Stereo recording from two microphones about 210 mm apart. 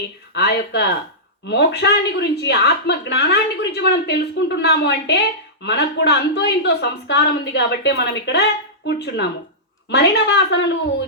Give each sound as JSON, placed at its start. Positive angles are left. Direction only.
{"t": 0.3, "sound": "a woman's voice", "side_deg": 55}